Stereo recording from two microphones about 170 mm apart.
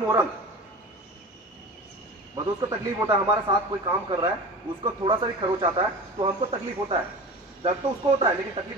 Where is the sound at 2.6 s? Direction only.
25° right (ahead or behind).